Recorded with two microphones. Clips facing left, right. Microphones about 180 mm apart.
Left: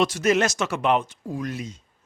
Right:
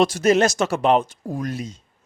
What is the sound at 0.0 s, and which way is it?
Speech, 35° right (ahead or behind).